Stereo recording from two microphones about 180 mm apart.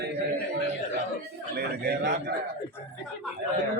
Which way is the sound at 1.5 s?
65° right (ahead or behind).